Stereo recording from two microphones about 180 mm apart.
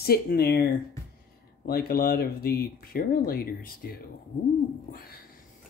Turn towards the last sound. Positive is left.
turn(degrees=55)  # may be behind; listen again after turning